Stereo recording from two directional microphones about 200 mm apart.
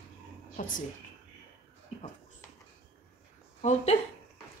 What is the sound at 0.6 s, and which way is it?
Speech, 40° left (ahead or behind).